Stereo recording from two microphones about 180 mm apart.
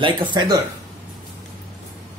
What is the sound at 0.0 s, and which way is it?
Speech, 25° right (ahead or behind).